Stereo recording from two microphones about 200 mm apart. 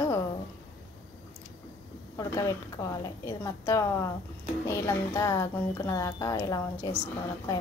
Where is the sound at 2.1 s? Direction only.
15° left (ahead or behind).